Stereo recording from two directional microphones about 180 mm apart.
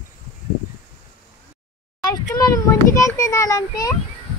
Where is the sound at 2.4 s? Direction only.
15° left (ahead or behind).